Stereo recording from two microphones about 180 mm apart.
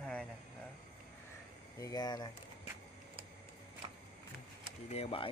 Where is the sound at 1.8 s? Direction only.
20° left (ahead or behind).